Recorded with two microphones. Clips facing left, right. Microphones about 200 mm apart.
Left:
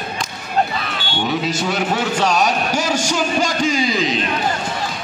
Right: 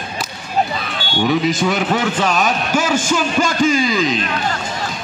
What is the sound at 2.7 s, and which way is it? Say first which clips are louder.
A man's voice: right 2 dB; 50° right (ahead or behind).